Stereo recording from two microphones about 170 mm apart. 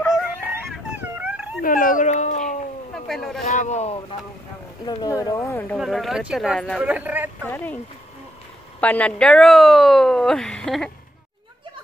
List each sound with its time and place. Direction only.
0.5 s dog: 10° right (ahead or behind)
1.6 s speech: 55° left (ahead or behind)
2.9 s a sound: centre (ahead or behind)
3.4 s speech: 40° left (ahead or behind)
5.2 s speech: 20° left (ahead or behind)
5.8 s speech: centre (ahead or behind)
6.8 s speech: 10° right (ahead or behind)
7.4 s speech: 10° left (ahead or behind)
8.8 s speech: 10° left (ahead or behind)